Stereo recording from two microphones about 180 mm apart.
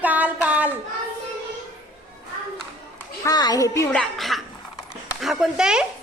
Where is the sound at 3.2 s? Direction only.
20° left (ahead or behind).